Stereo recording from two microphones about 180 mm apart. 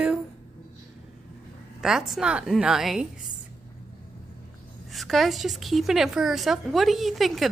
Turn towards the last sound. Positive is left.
turn(degrees=0)  # may be behind; listen again after turning